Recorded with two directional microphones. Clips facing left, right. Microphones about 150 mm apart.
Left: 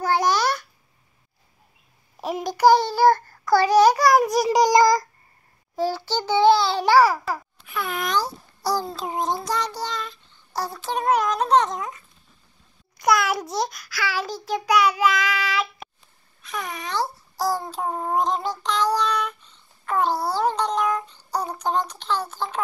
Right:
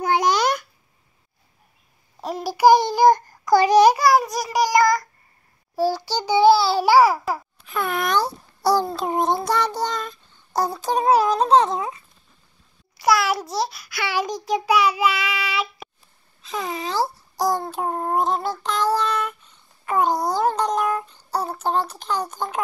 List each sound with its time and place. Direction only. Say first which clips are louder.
0.0 s babbling: right 1 dB; 20° right (ahead or behind)
2.4 s child singing: right 2 dB; 10° right (ahead or behind)
5.8 s child singing: right 2 dB; 10° right (ahead or behind)
7.7 s child singing: right 3 dB; 55° right (ahead or behind)
10.8 s speech: right 3 dB; 35° right (ahead or behind)
12.9 s babbling: right 1 dB; 5° right (ahead or behind)
13.8 s child singing: right 3 dB; 20° right (ahead or behind)
16.4 s a child's voice: right 4 dB; 25° right (ahead or behind)
17.7 s child singing: right 1 dB; 5° right (ahead or behind)
18.9 s a child's voice: right 1 dB; 5° right (ahead or behind)
21.3 s child singing: right 1 dB; 5° right (ahead or behind)